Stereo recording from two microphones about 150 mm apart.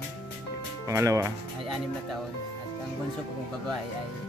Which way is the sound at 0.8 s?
20° right (ahead or behind).